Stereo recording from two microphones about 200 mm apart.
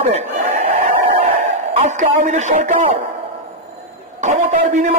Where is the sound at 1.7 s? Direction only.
35° right (ahead or behind).